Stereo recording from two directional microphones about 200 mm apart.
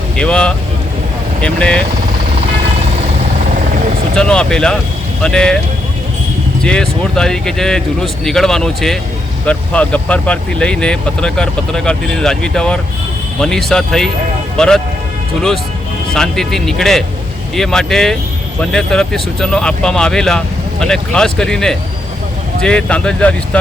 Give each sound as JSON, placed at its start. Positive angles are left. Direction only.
{"t": 0.2, "sound": "speech", "side_deg": 5}
{"t": 4.1, "sound": "speech", "side_deg": 5}
{"t": 6.6, "sound": "speech", "side_deg": 5}
{"t": 16.1, "sound": "speech", "side_deg": 0}